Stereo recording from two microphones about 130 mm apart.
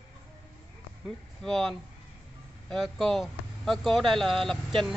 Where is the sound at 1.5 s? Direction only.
5° left (ahead or behind).